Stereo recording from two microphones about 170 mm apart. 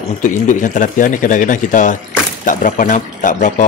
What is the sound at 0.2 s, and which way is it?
Speech, 45° left (ahead or behind).